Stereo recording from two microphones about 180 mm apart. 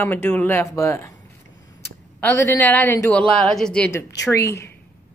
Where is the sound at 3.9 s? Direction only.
15° left (ahead or behind).